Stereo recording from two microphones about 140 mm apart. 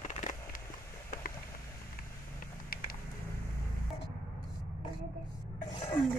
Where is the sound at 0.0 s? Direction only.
60° left (ahead or behind).